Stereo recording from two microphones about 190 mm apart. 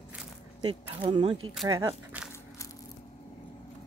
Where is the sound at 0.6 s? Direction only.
25° right (ahead or behind).